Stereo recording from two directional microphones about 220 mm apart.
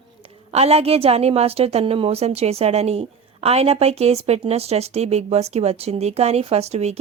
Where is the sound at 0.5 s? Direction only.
25° right (ahead or behind).